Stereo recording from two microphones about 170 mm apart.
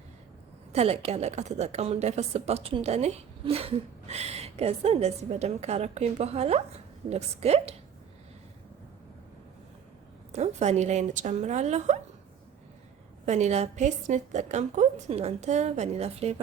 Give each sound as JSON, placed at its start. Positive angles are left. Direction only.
{"t": 0.7, "sound": "a woman's voice", "side_deg": -40}
{"t": 10.3, "sound": "a woman's voice", "side_deg": -40}
{"t": 13.2, "sound": "a woman's voice", "side_deg": -40}